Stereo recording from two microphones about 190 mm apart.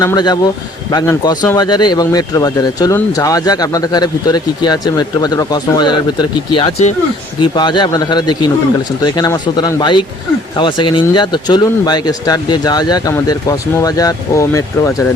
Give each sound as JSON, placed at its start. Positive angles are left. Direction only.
{"t": 0.0, "sound": "speech", "side_deg": 20}